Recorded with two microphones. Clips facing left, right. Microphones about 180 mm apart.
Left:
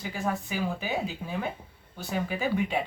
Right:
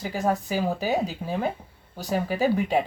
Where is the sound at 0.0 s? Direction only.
40° right (ahead or behind).